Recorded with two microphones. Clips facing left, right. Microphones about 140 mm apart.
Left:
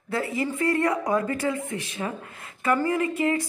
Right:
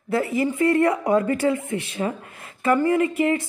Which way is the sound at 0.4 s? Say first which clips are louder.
Right 5 dB; 25° right (ahead or behind).